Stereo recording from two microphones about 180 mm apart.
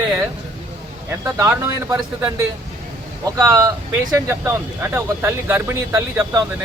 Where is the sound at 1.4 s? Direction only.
15° right (ahead or behind).